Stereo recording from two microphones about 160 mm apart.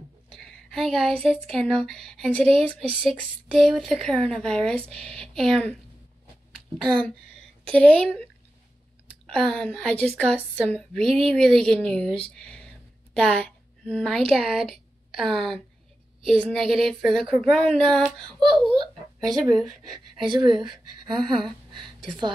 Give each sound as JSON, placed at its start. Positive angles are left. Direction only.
{"t": 0.3, "sound": "a woman's voice", "side_deg": 5}
{"t": 7.7, "sound": "a woman's voice", "side_deg": 10}
{"t": 9.3, "sound": "a woman's voice", "side_deg": 5}
{"t": 19.1, "sound": "a sound", "side_deg": -25}
{"t": 20.2, "sound": "a woman's voice", "side_deg": -30}
{"t": 21.2, "sound": "a woman's voice", "side_deg": 0}